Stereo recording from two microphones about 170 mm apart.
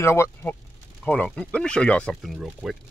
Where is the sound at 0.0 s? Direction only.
15° left (ahead or behind); by 2.8 s 5° right (ahead or behind).